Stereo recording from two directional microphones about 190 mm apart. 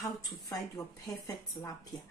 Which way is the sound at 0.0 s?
15° left (ahead or behind).